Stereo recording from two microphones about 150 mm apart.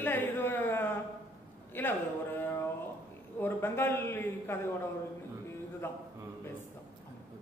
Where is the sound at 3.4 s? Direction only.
15° left (ahead or behind).